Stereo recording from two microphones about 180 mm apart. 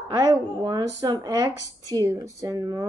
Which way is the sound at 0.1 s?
20° right (ahead or behind).